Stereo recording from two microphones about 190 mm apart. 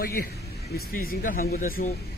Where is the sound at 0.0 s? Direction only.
50° left (ahead or behind).